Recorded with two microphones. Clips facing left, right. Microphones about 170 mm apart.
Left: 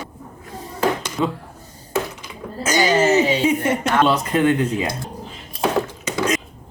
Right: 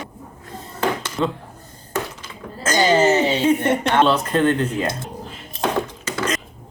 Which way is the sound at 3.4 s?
5° left (ahead or behind).